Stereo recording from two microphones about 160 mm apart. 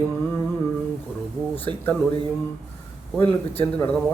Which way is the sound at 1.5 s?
10° left (ahead or behind).